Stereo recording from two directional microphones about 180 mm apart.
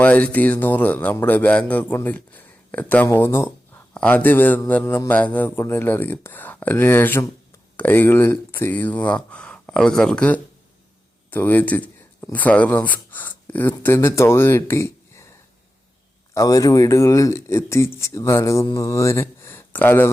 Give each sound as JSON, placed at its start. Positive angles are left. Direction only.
{"t": 0.0, "sound": "speech", "side_deg": 10}